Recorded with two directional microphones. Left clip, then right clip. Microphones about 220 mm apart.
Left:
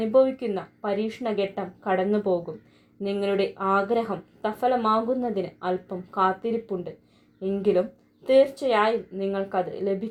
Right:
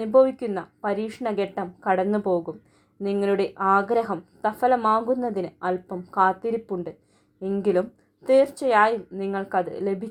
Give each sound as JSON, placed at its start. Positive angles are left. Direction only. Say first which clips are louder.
{"t": 0.0, "sound": "speech", "louder": "right 2 dB", "side_deg": -30}